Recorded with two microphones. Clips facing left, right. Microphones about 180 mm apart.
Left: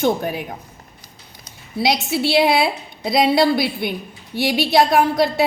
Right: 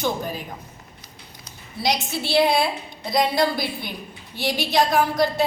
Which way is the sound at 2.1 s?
65° left (ahead or behind).